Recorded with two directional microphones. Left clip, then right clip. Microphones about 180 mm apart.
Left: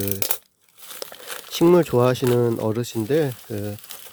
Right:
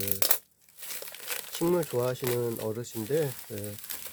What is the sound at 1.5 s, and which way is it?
Speech, 45° left (ahead or behind).